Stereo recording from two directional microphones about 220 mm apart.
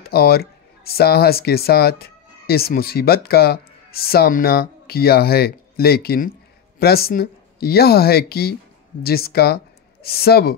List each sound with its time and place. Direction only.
0.0 s speech: 45° left (ahead or behind)